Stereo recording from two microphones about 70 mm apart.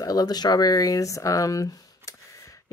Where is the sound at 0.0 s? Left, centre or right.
Left.